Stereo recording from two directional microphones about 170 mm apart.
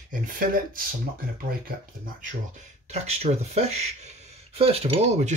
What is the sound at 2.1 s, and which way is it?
Speech, 45° right (ahead or behind).